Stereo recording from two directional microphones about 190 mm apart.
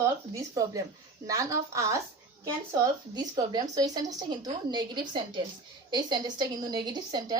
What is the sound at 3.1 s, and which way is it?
A woman's voice, 20° right (ahead or behind).